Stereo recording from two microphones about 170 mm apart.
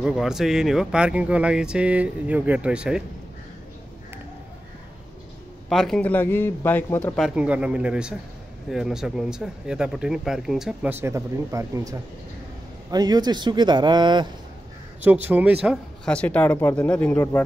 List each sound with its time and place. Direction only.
0.0 s speech: centre (ahead or behind)
5.7 s a man's voice: centre (ahead or behind)
7.2 s speech: 5° right (ahead or behind); by 14.2 s 25° right (ahead or behind)
15.2 s speech: 10° right (ahead or behind)
16.1 s a man's voice: 5° left (ahead or behind)